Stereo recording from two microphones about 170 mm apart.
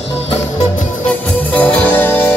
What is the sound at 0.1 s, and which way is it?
Music, 35° left (ahead or behind).